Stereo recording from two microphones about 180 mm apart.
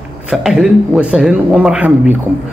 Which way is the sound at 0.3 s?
Centre (ahead or behind).